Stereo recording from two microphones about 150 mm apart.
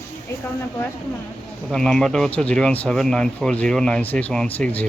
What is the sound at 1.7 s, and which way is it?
Speech, 5° left (ahead or behind).